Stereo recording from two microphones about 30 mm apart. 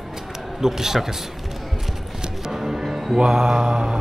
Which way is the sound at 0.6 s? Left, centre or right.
Centre.